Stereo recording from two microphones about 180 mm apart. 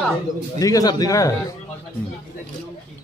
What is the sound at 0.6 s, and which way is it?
Speech, 20° left (ahead or behind).